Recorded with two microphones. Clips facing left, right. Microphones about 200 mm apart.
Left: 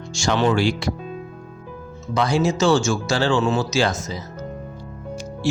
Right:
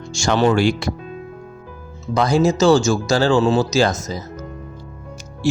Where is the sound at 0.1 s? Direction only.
45° right (ahead or behind).